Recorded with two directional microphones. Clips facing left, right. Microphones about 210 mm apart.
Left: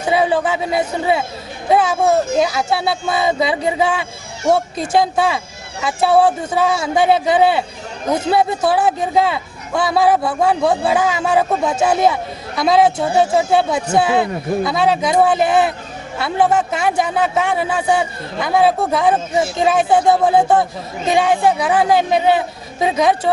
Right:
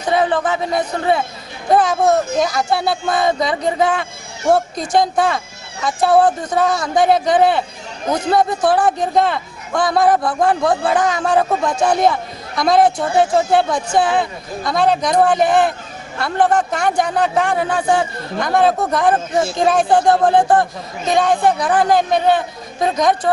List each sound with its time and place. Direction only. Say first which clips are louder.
0.1 s a man's voice: even; 10° left (ahead or behind)